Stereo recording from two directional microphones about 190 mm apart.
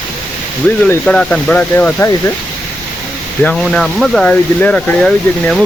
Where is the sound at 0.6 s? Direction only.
5° left (ahead or behind).